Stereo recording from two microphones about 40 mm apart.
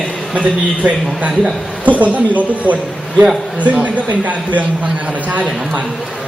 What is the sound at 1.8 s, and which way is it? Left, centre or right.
A man's voice, right.